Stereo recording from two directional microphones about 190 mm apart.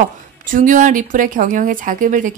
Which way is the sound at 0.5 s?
45° right (ahead or behind).